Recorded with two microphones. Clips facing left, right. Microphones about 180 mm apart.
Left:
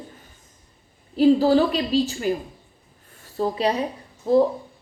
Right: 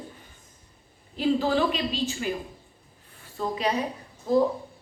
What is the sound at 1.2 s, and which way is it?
A woman's voice, 35° left (ahead or behind).